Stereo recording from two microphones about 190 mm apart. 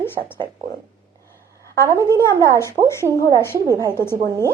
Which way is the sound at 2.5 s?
15° left (ahead or behind).